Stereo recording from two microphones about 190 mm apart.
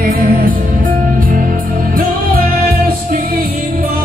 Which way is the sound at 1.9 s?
50° right (ahead or behind).